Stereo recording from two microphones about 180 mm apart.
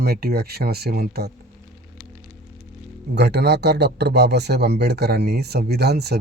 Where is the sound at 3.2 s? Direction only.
65° right (ahead or behind).